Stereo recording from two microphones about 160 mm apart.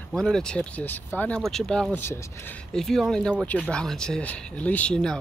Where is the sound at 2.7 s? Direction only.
Centre (ahead or behind).